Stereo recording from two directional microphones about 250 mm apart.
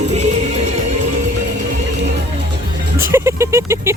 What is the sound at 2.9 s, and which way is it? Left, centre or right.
Speech, centre.